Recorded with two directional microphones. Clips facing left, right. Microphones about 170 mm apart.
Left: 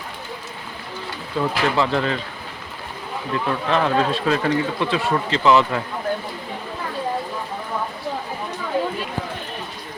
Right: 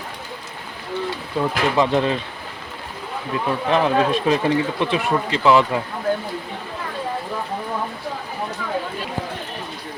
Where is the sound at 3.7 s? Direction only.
15° right (ahead or behind).